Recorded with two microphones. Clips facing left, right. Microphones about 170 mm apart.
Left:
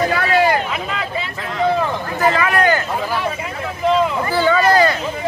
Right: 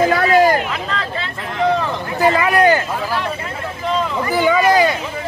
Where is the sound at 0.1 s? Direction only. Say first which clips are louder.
Right 3 dB; 40° right (ahead or behind).